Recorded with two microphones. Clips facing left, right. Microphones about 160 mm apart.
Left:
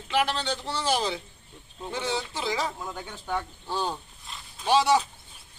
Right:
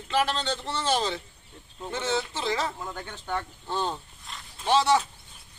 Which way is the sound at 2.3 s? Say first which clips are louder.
Right 1 dB; 10° left (ahead or behind).